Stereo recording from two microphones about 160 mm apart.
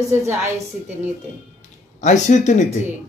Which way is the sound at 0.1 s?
15° right (ahead or behind).